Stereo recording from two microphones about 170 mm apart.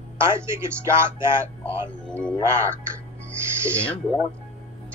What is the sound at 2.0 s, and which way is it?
Speech, 5° left (ahead or behind).